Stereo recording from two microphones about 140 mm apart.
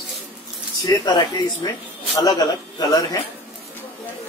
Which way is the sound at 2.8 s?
30° left (ahead or behind).